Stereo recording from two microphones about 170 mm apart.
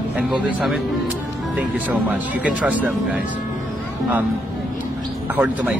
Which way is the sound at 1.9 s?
10° right (ahead or behind).